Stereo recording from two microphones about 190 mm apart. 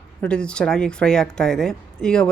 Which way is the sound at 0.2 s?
5° left (ahead or behind).